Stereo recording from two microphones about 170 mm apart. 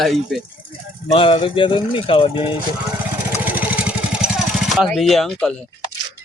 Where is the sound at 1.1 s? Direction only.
30° left (ahead or behind).